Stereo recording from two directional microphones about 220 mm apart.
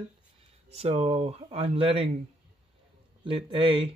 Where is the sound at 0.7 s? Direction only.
30° right (ahead or behind).